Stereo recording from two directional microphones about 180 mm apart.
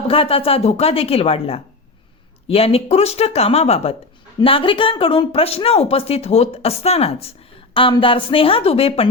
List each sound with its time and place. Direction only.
0.1 s speech: 30° left (ahead or behind)